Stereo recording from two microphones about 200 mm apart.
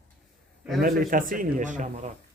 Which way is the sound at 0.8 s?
45° right (ahead or behind).